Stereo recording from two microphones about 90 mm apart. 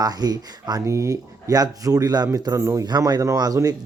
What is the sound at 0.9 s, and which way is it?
Speech, 35° right (ahead or behind).